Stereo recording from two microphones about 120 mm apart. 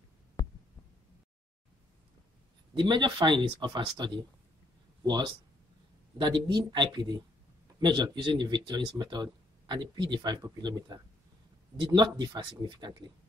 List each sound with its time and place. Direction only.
2.7 s speech: 40° right (ahead or behind)